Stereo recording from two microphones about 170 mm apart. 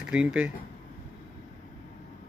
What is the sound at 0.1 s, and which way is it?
Speech, 5° right (ahead or behind).